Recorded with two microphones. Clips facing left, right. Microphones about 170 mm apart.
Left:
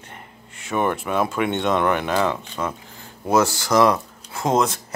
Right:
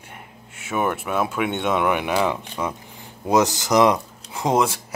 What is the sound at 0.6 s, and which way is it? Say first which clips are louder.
Speech: left 1 dB; 5° right (ahead or behind).